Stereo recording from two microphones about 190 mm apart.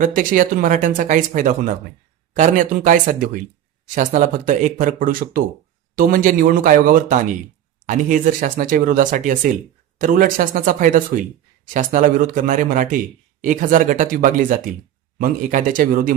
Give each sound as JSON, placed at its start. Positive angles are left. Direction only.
{"t": 0.0, "sound": "speech", "side_deg": -45}